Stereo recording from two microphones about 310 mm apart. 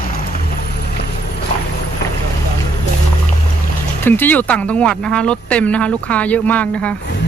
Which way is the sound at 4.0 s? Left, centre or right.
Centre.